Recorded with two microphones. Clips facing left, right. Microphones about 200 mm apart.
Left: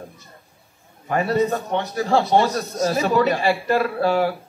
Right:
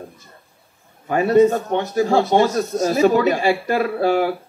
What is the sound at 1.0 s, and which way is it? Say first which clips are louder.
A man's voice: right 6 dB; 50° right (ahead or behind).